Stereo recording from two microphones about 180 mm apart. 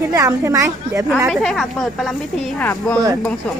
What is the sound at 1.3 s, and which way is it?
Speech, centre (ahead or behind).